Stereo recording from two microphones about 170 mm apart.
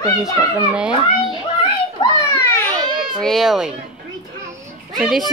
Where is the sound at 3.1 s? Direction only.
Centre (ahead or behind).